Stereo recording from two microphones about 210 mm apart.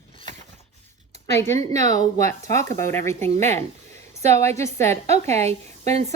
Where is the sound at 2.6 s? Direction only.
15° left (ahead or behind).